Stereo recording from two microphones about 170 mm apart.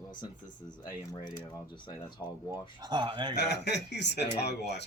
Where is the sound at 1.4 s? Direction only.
15° left (ahead or behind).